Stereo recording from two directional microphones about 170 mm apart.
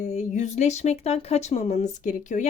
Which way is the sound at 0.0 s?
45° left (ahead or behind).